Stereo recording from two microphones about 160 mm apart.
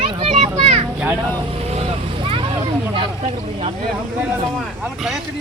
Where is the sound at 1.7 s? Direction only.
40° right (ahead or behind).